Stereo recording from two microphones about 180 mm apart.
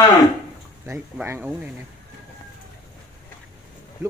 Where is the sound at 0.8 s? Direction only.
10° right (ahead or behind).